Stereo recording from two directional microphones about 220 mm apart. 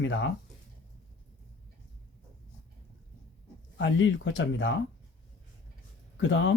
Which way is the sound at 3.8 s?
60° left (ahead or behind).